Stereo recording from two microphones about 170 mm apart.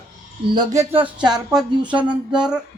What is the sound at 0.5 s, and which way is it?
Speech, 20° right (ahead or behind).